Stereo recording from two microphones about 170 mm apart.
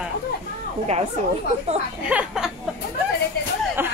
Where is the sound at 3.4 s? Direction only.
70° left (ahead or behind).